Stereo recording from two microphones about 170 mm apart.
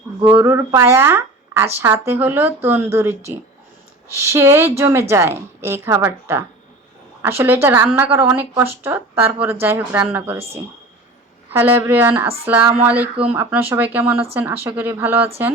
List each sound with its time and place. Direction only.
0.3 s speech: 10° right (ahead or behind)
11.5 s speech: 10° right (ahead or behind)